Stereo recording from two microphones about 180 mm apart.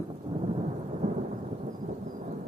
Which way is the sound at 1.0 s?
40° right (ahead or behind).